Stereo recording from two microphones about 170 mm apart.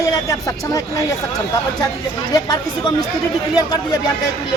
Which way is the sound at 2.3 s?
25° left (ahead or behind).